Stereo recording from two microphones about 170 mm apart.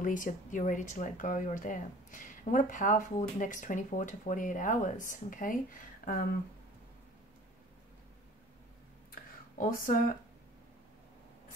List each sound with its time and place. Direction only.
0.0 s speech: 50° left (ahead or behind)
9.6 s speech: 55° left (ahead or behind)